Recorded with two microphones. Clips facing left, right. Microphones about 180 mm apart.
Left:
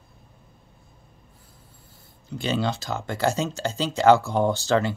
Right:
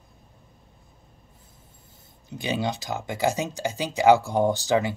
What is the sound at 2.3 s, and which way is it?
Speech, 15° right (ahead or behind).